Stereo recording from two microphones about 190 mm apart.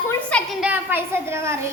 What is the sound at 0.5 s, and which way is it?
A child's voice, 5° right (ahead or behind).